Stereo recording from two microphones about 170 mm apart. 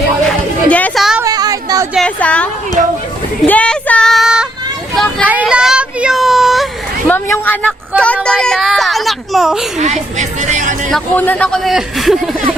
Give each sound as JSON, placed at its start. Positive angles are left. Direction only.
{"t": 0.7, "sound": "a sound", "side_deg": 10}
{"t": 1.2, "sound": "a sound", "side_deg": -20}
{"t": 2.0, "sound": "a woman's voice", "side_deg": 5}
{"t": 3.4, "sound": "child singing", "side_deg": 10}
{"t": 7.1, "sound": "speech", "side_deg": 10}
{"t": 10.2, "sound": "speech", "side_deg": -45}
{"t": 10.9, "sound": "speech", "side_deg": 10}